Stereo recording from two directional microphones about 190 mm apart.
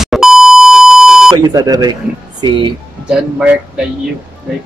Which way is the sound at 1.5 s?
20° right (ahead or behind).